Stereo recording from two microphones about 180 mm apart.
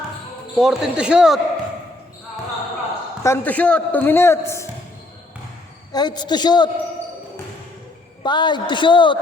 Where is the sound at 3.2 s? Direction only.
10° left (ahead or behind).